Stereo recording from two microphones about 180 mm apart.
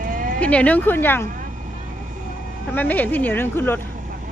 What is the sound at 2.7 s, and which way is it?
Speech, 10° left (ahead or behind).